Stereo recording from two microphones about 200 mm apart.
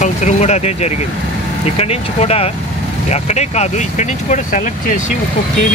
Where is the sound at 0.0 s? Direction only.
35° left (ahead or behind).